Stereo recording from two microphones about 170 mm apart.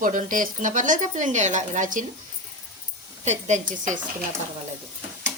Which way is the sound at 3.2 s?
45° right (ahead or behind).